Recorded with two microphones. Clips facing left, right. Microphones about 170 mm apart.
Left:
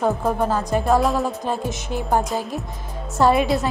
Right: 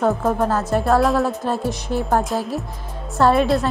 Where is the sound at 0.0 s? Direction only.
Centre (ahead or behind).